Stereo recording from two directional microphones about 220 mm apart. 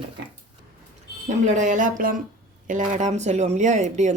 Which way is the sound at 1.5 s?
35° right (ahead or behind).